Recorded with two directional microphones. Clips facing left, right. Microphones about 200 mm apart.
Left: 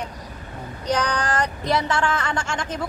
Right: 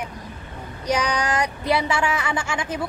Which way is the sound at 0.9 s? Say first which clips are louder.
Even; 10° right (ahead or behind).